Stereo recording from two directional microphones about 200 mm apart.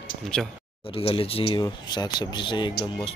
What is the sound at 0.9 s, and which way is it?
Speech, 25° left (ahead or behind).